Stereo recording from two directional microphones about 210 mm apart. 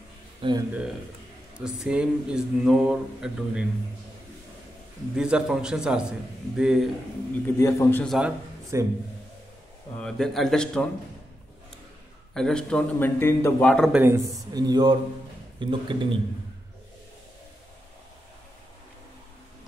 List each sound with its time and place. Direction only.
0.4 s a man's voice: 20° right (ahead or behind)
1.6 s speech: 5° right (ahead or behind)
5.1 s speech: 5° right (ahead or behind)
7.5 s a man's voice: 15° left (ahead or behind)
8.2 s a man's voice: 15° right (ahead or behind)
9.9 s speech: centre (ahead or behind)
12.4 s speech: 5° left (ahead or behind)
13.9 s a man's voice: 10° right (ahead or behind)